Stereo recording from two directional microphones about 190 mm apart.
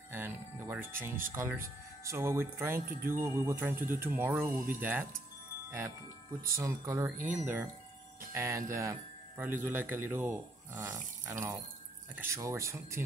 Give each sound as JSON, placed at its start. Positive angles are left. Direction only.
{"t": 0.1, "sound": "speech", "side_deg": -10}
{"t": 6.5, "sound": "speech", "side_deg": -15}